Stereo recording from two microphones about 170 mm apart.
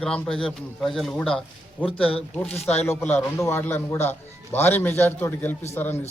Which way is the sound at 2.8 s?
15° left (ahead or behind).